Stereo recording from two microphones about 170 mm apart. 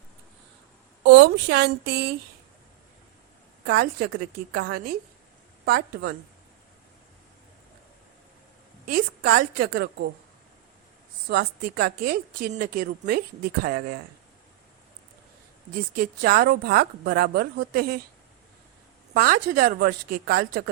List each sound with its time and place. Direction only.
1.0 s a woman's voice: 85° right
3.7 s a woman's voice: 65° right (ahead or behind)
8.9 s a woman's voice: 60° right (ahead or behind)
11.3 s a woman's voice: 70° right (ahead or behind)
16.0 s a woman's voice: 60° right (ahead or behind)
19.1 s a woman's voice: 60° right (ahead or behind)